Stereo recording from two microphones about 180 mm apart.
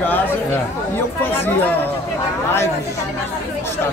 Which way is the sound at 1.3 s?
10° left (ahead or behind).